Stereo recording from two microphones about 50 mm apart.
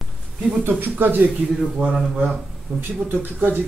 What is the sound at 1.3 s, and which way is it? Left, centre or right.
Speech, centre.